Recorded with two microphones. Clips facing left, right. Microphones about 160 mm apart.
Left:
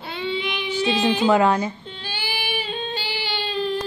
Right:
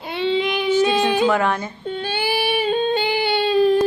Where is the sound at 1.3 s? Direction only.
15° left (ahead or behind).